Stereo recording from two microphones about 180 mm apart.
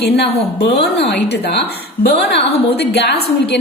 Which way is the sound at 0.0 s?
65° left (ahead or behind).